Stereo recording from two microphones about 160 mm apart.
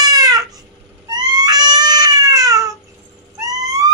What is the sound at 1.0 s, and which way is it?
Cat, 25° right (ahead or behind).